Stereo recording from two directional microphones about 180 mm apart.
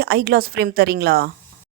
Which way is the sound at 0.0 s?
60° right (ahead or behind).